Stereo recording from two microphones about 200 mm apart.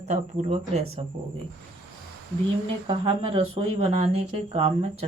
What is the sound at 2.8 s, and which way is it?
Speech, 25° right (ahead or behind).